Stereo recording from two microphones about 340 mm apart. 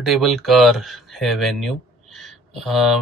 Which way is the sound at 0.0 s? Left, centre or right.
Centre.